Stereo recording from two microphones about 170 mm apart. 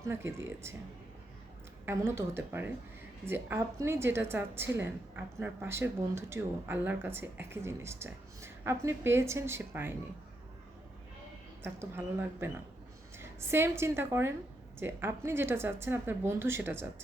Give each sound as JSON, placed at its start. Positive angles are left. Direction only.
{"t": 0.0, "sound": "a woman's voice", "side_deg": -15}
{"t": 1.8, "sound": "a woman's voice", "side_deg": -15}
{"t": 11.6, "sound": "a woman's voice", "side_deg": -15}